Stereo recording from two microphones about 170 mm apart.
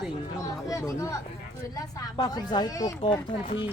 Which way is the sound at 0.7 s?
20° left (ahead or behind).